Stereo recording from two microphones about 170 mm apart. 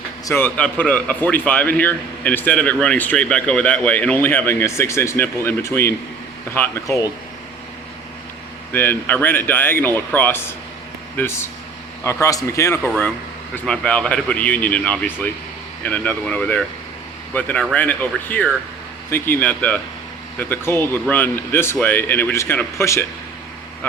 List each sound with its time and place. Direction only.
0.3 s a man's voice: 10° left (ahead or behind)
8.7 s a man's voice: 10° left (ahead or behind)